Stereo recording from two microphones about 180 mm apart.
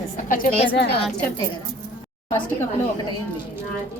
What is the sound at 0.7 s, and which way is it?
Speech, 65° left (ahead or behind).